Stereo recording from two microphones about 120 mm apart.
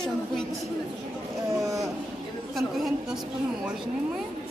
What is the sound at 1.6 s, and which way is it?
Speech, 25° right (ahead or behind).